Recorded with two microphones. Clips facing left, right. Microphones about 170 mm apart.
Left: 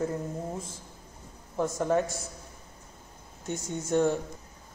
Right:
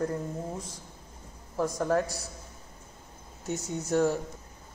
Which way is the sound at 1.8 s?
Centre (ahead or behind).